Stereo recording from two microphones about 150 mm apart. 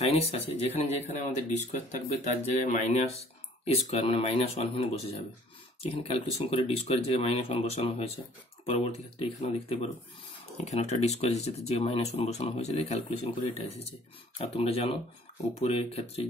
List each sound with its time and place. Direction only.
0.0 s speech: 45° left (ahead or behind)